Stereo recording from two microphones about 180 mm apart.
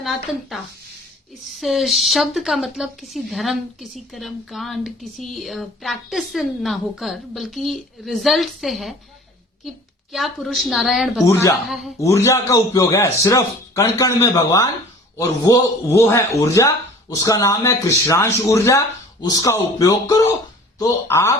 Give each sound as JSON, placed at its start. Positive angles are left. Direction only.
{"t": 0.0, "sound": "a woman's voice", "side_deg": 0}
{"t": 11.3, "sound": "a man's voice", "side_deg": 15}